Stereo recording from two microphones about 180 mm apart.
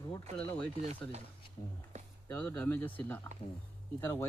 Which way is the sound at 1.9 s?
40° right (ahead or behind).